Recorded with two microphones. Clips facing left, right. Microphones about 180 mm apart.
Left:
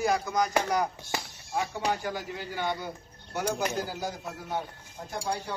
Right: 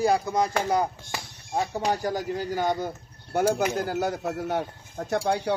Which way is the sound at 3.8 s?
60° right (ahead or behind).